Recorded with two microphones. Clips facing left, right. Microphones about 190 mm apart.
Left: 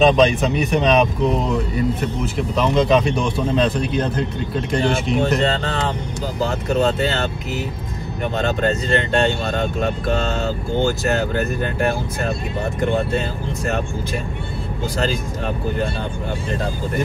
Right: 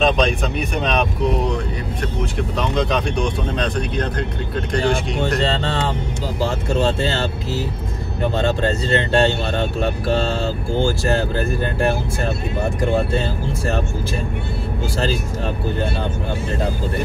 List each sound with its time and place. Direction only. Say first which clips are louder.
0.0 s speech: left 4 dB; centre (ahead or behind)
5.4 s speech: even; 30° right (ahead or behind)